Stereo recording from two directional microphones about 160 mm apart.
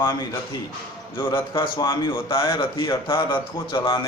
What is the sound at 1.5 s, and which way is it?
A man's voice, 30° left (ahead or behind).